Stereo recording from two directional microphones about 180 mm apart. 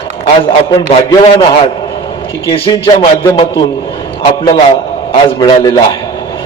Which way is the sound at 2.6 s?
25° left (ahead or behind).